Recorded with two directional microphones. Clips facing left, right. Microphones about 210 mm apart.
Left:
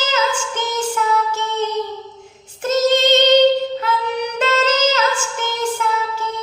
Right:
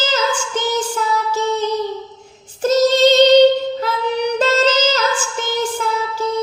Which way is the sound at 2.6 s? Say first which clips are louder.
Right 3 dB; 35° right (ahead or behind).